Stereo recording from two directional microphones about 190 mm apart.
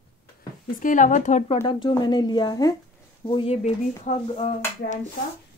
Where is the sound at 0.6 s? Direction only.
45° left (ahead or behind).